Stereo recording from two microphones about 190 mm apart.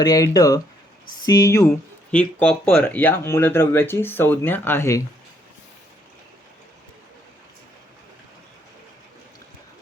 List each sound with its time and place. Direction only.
0.0 s speech: 20° left (ahead or behind)